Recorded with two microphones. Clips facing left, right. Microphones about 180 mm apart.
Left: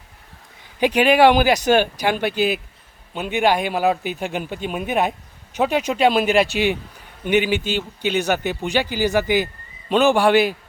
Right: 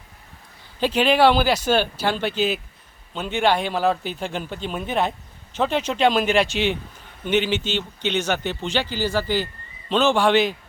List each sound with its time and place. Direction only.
0.8 s speech: 15° left (ahead or behind)